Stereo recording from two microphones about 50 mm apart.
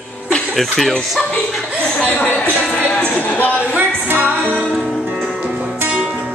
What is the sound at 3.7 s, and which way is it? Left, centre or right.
Music, right.